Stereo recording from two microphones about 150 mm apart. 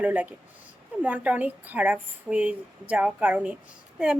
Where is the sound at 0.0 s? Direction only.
10° right (ahead or behind).